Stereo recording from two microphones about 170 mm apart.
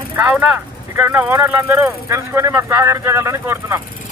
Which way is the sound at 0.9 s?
10° right (ahead or behind).